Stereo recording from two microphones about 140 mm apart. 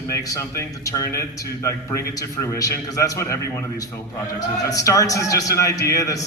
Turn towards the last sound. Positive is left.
turn(degrees=25)  # may be behind; listen again after turning